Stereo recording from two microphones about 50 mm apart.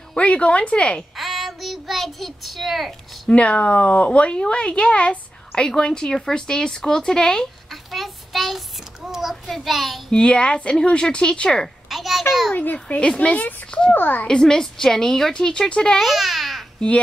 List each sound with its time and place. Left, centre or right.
0.1 s speech: left
1.1 s child singing: centre
3.3 s a woman's voice: left
7.7 s child singing: centre
9.2 s a child's voice: centre
10.1 s speech: left
11.9 s a sound: centre
12.7 s a child's voice: left
13.9 s a woman's voice: left
14.2 s a woman's voice: centre
16.0 s babbling: centre